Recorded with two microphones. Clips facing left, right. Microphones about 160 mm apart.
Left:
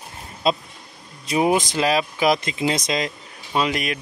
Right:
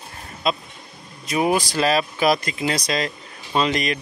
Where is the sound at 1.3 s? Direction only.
20° left (ahead or behind).